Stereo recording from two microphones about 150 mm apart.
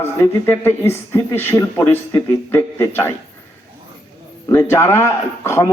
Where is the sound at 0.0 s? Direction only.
15° left (ahead or behind).